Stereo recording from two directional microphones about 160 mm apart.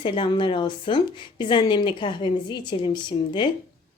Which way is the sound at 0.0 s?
30° left (ahead or behind).